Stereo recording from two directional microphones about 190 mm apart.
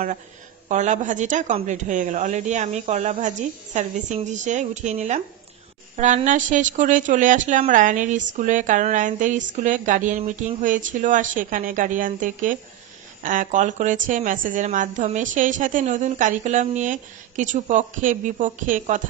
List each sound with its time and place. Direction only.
0.7 s a woman's voice: 40° right (ahead or behind)